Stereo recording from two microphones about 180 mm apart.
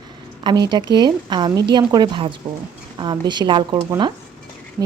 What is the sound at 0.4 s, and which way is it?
A woman's voice, 25° right (ahead or behind).